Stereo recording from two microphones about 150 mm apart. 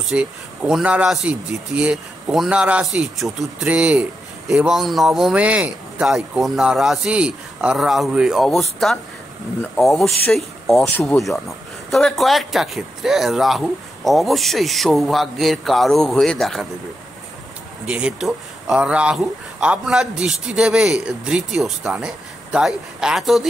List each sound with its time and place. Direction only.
0.1 s a man's voice: 5° right (ahead or behind)
17.8 s a man's voice: 5° right (ahead or behind)